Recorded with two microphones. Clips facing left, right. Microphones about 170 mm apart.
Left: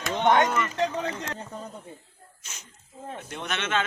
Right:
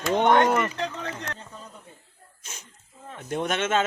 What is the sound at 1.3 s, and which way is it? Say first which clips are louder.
Speech: left 6 dB; 35° left (ahead or behind).